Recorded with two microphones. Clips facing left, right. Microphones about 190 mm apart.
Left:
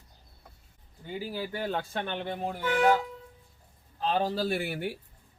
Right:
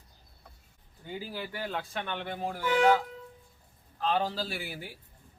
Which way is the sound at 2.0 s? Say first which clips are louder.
Left 2 dB; 25° left (ahead or behind).